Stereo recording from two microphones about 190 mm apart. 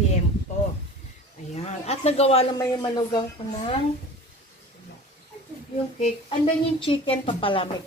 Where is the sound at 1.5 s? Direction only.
35° left (ahead or behind).